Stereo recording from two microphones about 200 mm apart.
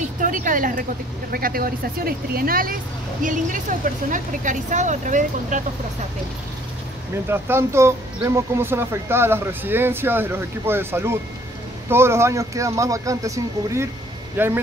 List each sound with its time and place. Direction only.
0.2 s speech: 40° right (ahead or behind)
7.2 s speech: 10° right (ahead or behind)